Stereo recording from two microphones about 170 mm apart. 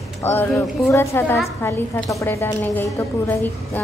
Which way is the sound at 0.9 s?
15° left (ahead or behind).